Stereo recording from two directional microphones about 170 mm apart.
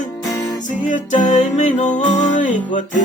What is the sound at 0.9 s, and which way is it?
Music, 50° left (ahead or behind).